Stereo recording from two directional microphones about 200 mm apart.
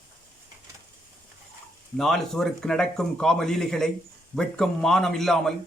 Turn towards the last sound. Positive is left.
turn(degrees=0)  # may be behind; listen again after turning